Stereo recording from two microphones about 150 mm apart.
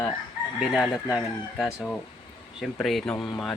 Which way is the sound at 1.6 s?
Centre (ahead or behind).